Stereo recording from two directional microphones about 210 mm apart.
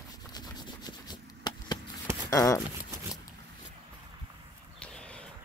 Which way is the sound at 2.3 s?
15° left (ahead or behind).